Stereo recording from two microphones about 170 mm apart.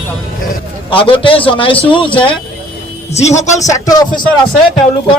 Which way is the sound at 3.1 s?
40° left (ahead or behind).